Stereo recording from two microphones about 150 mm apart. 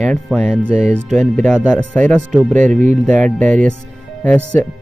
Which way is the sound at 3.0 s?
5° left (ahead or behind).